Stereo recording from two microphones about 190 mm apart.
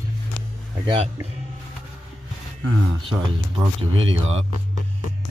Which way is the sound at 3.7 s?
30° right (ahead or behind).